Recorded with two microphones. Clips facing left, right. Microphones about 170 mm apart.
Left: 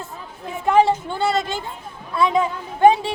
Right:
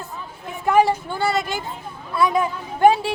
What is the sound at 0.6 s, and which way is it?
Speech, 25° left (ahead or behind).